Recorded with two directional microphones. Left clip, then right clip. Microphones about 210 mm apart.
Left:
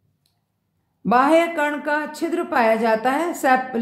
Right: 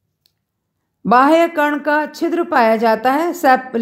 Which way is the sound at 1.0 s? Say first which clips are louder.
Right 5 dB; 35° right (ahead or behind).